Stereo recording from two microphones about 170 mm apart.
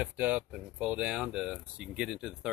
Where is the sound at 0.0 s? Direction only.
10° right (ahead or behind).